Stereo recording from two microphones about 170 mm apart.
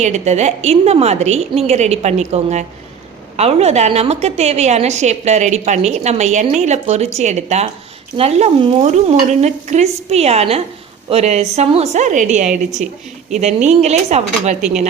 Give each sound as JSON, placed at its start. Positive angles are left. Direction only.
{"t": 0.0, "sound": "a woman's voice", "side_deg": -40}